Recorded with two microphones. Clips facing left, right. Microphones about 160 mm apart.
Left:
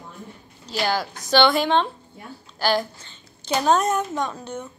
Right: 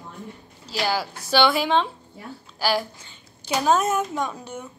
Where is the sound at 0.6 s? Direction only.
5° right (ahead or behind).